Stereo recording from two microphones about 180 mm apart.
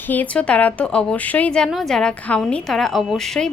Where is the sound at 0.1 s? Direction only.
10° left (ahead or behind).